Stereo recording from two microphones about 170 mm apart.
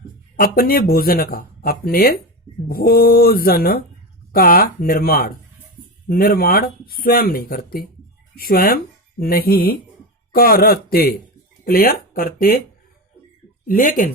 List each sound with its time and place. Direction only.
0.3 s speech: 60° left (ahead or behind)
13.7 s speech: 55° left (ahead or behind)